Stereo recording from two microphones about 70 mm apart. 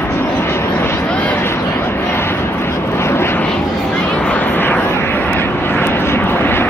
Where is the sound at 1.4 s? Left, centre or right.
Left.